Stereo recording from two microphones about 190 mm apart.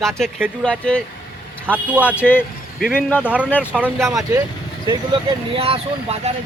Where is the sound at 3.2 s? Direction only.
5° right (ahead or behind).